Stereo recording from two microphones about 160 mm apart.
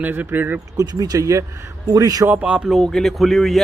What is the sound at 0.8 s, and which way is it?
Speech, 25° right (ahead or behind).